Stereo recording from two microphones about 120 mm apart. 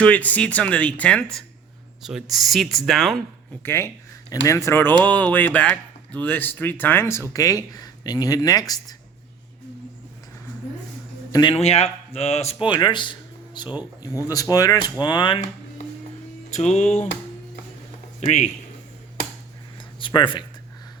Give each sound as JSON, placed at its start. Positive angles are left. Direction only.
{"t": 0.0, "sound": "speech", "side_deg": 10}
{"t": 3.6, "sound": "speech", "side_deg": 20}
{"t": 11.3, "sound": "speech", "side_deg": 35}
{"t": 11.5, "sound": "speech", "side_deg": 60}
{"t": 12.5, "sound": "speech", "side_deg": 40}
{"t": 14.0, "sound": "speech", "side_deg": 30}
{"t": 16.5, "sound": "music", "side_deg": 75}
{"t": 18.2, "sound": "speech", "side_deg": 75}
{"t": 20.0, "sound": "speech", "side_deg": 40}